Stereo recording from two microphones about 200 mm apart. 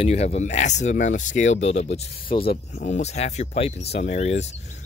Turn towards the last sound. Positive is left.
turn(degrees=35)  # may be behind; listen again after turning